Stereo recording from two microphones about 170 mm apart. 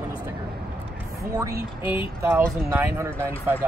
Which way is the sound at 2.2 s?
15° right (ahead or behind).